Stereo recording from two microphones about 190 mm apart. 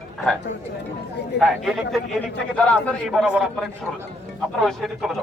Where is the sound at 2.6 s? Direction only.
5° left (ahead or behind).